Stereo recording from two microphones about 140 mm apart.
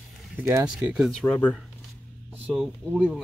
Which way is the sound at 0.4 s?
15° right (ahead or behind).